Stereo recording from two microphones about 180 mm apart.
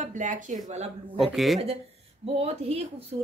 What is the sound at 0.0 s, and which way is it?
A woman's voice, 45° right (ahead or behind).